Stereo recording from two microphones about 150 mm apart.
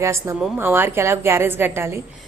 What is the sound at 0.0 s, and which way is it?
A woman's voice, 20° right (ahead or behind).